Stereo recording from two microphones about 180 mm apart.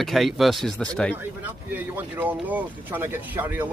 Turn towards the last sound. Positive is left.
turn(degrees=-10)  # may be behind; listen again after turning